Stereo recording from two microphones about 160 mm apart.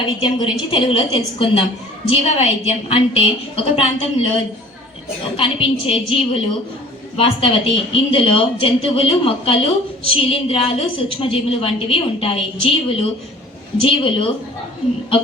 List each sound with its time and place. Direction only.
0.0 s a woman's voice: 30° left (ahead or behind)
5.4 s a woman's voice: 35° left (ahead or behind)